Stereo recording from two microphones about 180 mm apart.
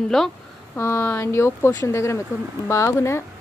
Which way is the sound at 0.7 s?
15° left (ahead or behind).